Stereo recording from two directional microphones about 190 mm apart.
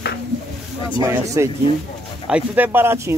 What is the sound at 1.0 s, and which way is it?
Speech, 15° right (ahead or behind).